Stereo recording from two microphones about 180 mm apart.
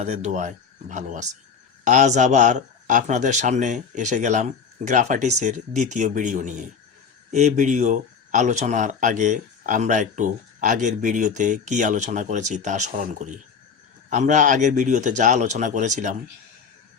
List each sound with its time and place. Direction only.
0.0 s speech: 40° right (ahead or behind)